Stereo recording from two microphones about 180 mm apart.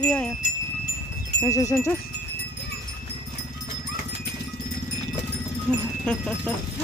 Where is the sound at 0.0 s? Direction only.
5° left (ahead or behind).